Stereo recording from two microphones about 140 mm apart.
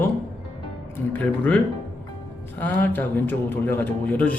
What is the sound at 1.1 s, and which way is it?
Speech, 10° left (ahead or behind).